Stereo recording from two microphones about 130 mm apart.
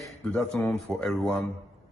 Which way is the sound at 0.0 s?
Centre (ahead or behind).